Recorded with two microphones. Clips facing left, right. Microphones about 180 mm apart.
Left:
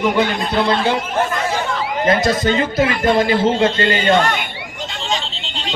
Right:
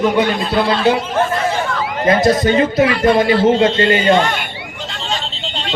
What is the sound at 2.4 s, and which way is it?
Speech, 20° right (ahead or behind).